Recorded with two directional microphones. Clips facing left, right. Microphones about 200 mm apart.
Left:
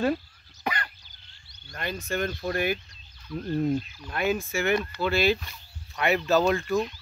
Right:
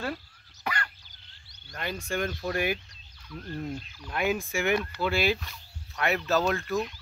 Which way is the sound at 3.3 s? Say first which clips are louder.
Left 9 dB; 25° left (ahead or behind).